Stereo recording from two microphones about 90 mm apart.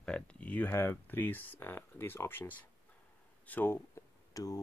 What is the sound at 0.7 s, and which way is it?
Speech, 25° left (ahead or behind).